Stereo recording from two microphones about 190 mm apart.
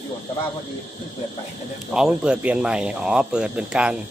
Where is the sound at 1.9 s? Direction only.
5° right (ahead or behind).